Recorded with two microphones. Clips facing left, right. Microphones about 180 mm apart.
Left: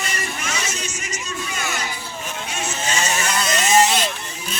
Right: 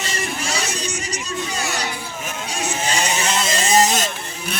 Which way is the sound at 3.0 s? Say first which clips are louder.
Right 1 dB; 20° right (ahead or behind).